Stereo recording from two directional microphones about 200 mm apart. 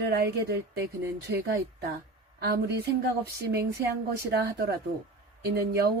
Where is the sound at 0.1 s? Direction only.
55° right (ahead or behind).